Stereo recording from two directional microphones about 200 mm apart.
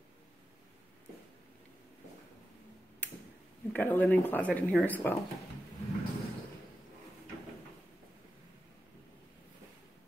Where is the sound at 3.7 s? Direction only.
10° left (ahead or behind).